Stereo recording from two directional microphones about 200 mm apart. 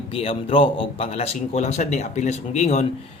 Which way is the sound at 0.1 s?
30° left (ahead or behind).